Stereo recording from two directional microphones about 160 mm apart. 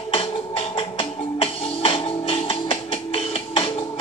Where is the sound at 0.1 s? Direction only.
35° left (ahead or behind).